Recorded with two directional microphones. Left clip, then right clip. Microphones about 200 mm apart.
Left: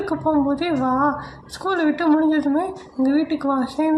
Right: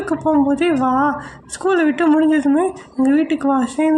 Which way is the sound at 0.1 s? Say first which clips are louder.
Right 5 dB; 40° right (ahead or behind).